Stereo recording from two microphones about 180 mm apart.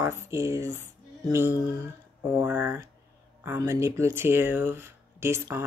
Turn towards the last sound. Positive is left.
turn(degrees=-15)  # may be behind; listen again after turning